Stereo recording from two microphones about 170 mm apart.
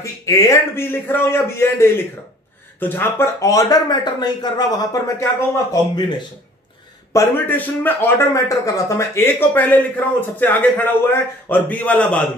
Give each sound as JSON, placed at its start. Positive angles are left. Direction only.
{"t": 0.0, "sound": "a man's voice", "side_deg": 20}
{"t": 7.1, "sound": "a man's voice", "side_deg": 15}